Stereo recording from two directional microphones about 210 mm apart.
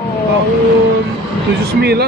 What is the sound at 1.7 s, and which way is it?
Speech, 50° right (ahead or behind).